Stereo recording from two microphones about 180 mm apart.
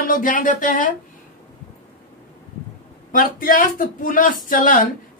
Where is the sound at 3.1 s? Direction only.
50° left (ahead or behind).